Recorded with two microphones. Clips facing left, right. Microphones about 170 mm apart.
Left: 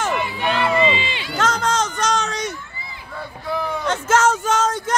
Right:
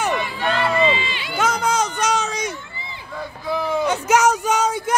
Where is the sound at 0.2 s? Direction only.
15° left (ahead or behind).